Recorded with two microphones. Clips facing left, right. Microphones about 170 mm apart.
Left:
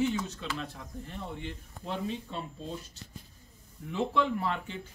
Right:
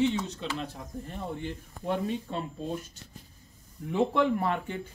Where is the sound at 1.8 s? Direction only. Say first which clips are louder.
Right 5 dB; 55° right (ahead or behind).